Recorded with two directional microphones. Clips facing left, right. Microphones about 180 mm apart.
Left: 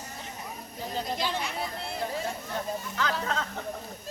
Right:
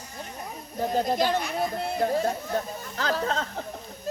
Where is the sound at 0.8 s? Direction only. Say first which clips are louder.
Right 8 dB; 50° right (ahead or behind); by 3.7 s 35° right (ahead or behind).